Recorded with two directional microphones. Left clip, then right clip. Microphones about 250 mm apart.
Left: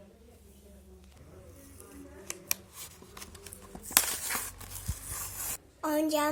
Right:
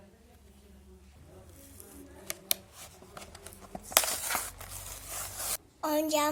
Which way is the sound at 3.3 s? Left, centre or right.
Centre.